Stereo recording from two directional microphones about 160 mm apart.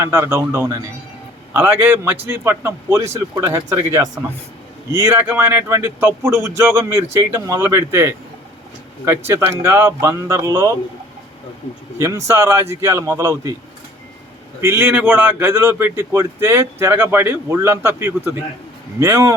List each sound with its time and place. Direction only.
0.0 s speech: 15° right (ahead or behind)
11.9 s speech: 20° right (ahead or behind)
14.6 s speech: 15° right (ahead or behind)